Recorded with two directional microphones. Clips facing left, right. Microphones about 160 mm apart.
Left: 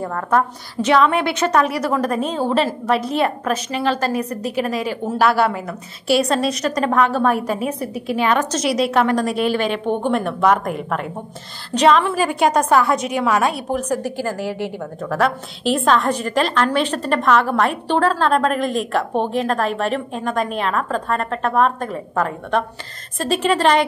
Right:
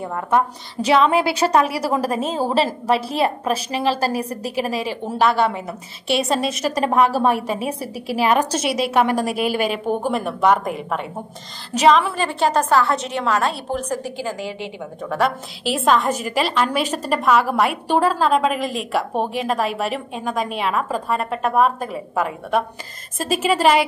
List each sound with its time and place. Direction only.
0.0 s a woman's voice: 15° right (ahead or behind)
0.8 s a woman's voice: 30° right (ahead or behind)
5.0 s a woman's voice: 5° left (ahead or behind)
7.5 s a woman's voice: 30° right (ahead or behind)
8.3 s a woman's voice: 10° right (ahead or behind)
12.2 s a woman's voice: 10° left (ahead or behind); by 23.8 s 5° right (ahead or behind)